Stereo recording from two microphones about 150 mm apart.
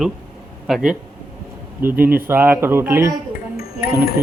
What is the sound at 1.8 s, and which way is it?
A man's voice, 15° right (ahead or behind).